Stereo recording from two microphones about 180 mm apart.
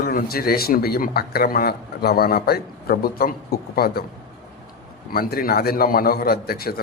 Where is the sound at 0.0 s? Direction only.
55° left (ahead or behind).